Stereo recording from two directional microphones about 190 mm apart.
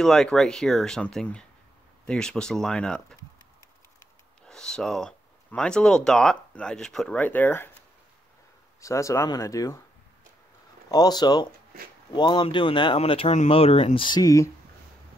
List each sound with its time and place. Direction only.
0.0 s speech: 5° left (ahead or behind)
4.5 s speech: 5° left (ahead or behind)
8.8 s speech: 15° left (ahead or behind)
10.9 s speech: 20° left (ahead or behind)